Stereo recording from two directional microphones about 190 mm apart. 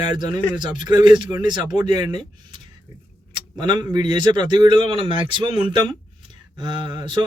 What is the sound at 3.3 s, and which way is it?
Speech, 25° right (ahead or behind).